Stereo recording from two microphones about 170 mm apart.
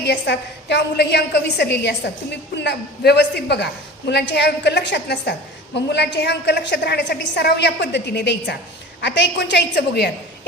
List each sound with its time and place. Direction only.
0.0 s a woman's voice: 80° left